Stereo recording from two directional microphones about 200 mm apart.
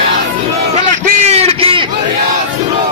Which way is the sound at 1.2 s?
30° right (ahead or behind).